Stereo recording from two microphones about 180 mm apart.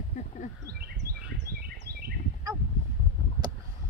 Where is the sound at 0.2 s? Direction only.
40° left (ahead or behind).